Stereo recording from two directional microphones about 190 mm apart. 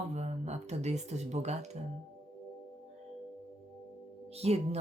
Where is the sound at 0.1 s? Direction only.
35° right (ahead or behind).